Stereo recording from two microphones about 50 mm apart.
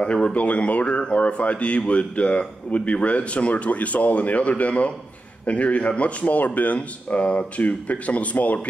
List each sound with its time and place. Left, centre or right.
0.0 s speech: centre